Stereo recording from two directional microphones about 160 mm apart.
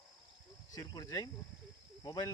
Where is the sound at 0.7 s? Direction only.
25° left (ahead or behind).